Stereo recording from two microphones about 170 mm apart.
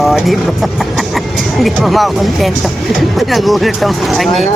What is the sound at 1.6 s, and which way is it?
Speech, centre (ahead or behind).